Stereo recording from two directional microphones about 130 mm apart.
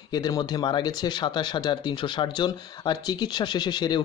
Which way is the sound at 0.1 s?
30° left (ahead or behind).